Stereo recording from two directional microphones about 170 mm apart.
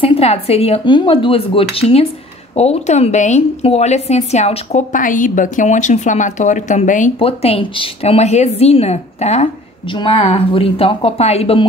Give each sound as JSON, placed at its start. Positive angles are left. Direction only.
{"t": 0.0, "sound": "a woman's voice", "side_deg": 35}
{"t": 7.2, "sound": "a woman's voice", "side_deg": 35}